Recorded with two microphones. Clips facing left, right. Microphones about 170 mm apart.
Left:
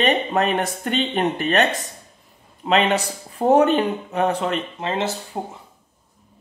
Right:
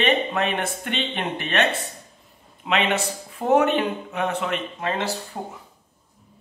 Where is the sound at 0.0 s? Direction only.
40° left (ahead or behind); by 5.4 s 25° left (ahead or behind).